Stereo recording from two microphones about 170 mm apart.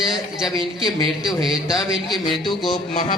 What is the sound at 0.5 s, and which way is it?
Speech, 30° right (ahead or behind).